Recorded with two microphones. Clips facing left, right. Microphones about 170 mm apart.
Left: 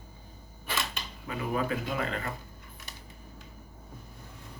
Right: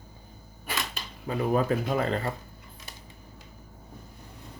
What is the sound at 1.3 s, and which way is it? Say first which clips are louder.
Speech: right 6 dB; 35° right (ahead or behind).